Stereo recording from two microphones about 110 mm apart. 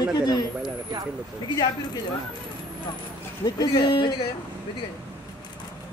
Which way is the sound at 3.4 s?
40° left (ahead or behind).